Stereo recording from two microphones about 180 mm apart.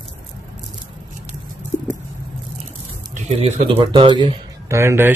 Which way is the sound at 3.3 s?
35° right (ahead or behind).